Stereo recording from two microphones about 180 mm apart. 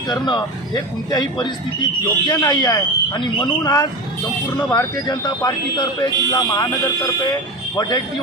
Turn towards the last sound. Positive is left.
turn(degrees=20)  # may be behind; listen again after turning